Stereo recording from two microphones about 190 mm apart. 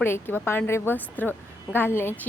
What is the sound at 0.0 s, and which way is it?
Speech, 10° left (ahead or behind).